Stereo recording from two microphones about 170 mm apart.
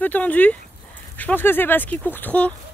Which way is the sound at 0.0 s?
10° left (ahead or behind).